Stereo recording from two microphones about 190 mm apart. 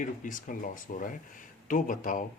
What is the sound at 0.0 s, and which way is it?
Speech, 45° left (ahead or behind).